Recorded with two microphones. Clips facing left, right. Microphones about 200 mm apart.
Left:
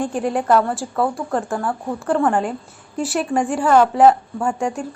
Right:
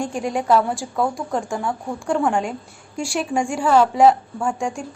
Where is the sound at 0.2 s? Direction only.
5° left (ahead or behind).